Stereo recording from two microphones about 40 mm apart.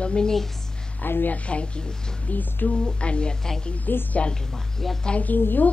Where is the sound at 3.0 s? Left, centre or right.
Left.